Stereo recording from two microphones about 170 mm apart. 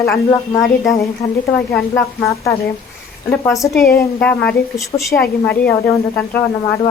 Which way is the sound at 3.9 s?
15° left (ahead or behind).